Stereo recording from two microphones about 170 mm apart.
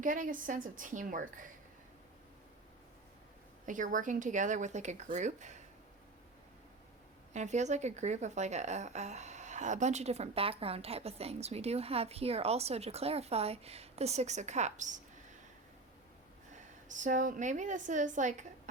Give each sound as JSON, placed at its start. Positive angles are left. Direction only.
{"t": 0.0, "sound": "speech", "side_deg": -50}
{"t": 3.7, "sound": "speech", "side_deg": -50}
{"t": 7.3, "sound": "speech", "side_deg": -45}
{"t": 16.9, "sound": "speech", "side_deg": -50}